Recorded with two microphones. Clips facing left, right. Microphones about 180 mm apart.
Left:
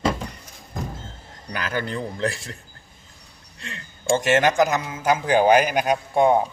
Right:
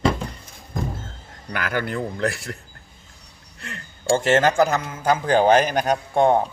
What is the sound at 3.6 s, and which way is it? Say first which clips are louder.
A man's voice: right 1 dB; 20° left (ahead or behind).